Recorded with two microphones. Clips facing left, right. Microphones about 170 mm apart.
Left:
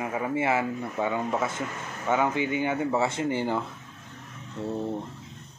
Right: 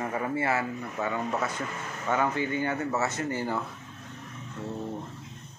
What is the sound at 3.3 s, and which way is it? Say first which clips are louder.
Speech: left 3 dB; 25° left (ahead or behind).